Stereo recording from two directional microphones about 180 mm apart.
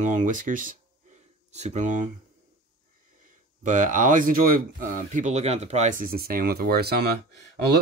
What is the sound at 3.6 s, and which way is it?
Speech, 45° right (ahead or behind).